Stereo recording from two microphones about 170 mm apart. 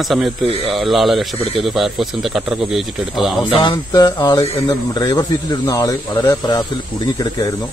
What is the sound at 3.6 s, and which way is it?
Speech, 25° left (ahead or behind).